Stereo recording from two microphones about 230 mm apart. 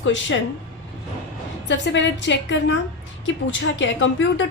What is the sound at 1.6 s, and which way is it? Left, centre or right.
A woman's voice, left.